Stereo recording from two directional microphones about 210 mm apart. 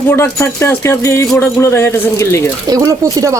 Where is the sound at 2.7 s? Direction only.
15° right (ahead or behind).